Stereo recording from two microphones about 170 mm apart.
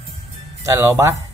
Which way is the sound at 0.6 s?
15° right (ahead or behind).